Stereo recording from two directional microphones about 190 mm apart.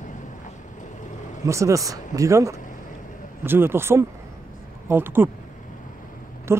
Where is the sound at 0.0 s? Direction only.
40° left (ahead or behind).